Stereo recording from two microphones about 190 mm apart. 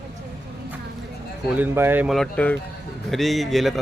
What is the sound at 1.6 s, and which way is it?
Speech, 10° right (ahead or behind).